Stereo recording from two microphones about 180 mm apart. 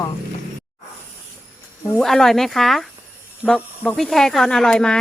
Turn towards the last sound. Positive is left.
turn(degrees=5)  # may be behind; listen again after turning